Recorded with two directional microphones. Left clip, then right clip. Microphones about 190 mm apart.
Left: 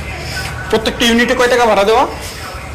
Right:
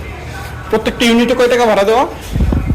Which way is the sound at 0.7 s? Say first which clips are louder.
Even; 20° right (ahead or behind).